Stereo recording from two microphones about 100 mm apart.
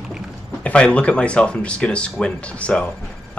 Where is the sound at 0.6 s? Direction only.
10° left (ahead or behind).